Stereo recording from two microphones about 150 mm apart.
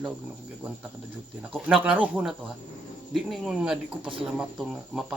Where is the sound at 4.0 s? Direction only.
35° right (ahead or behind).